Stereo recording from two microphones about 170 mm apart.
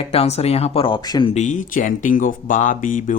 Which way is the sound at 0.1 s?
35° left (ahead or behind).